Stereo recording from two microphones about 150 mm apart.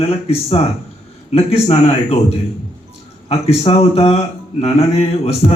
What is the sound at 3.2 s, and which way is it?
Speech, 45° left (ahead or behind).